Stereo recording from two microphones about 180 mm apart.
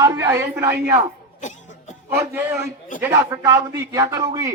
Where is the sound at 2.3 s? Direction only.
15° right (ahead or behind).